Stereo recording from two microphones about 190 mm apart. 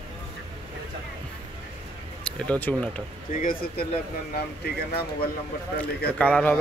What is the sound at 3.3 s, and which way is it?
Speech, 45° left (ahead or behind).